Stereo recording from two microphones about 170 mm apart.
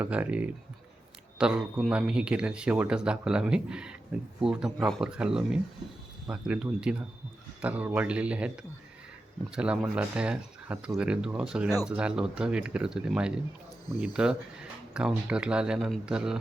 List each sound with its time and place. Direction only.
0.0 s speech: 10° right (ahead or behind)
9.6 s speech: 5° right (ahead or behind)